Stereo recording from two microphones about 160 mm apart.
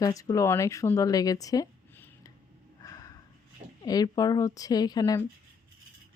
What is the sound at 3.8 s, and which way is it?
Speech, 25° left (ahead or behind).